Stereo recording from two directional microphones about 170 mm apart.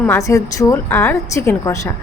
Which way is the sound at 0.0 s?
15° left (ahead or behind).